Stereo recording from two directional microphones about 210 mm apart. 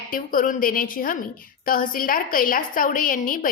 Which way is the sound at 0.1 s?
40° left (ahead or behind).